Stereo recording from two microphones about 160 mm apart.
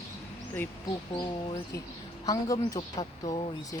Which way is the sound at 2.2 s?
20° left (ahead or behind).